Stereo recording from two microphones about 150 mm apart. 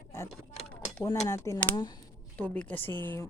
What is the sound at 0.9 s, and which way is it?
Speech, 15° left (ahead or behind).